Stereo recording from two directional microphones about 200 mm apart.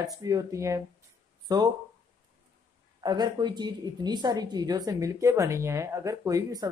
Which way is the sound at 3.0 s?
20° right (ahead or behind).